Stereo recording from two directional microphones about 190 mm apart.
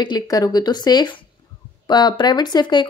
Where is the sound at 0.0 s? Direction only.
20° left (ahead or behind).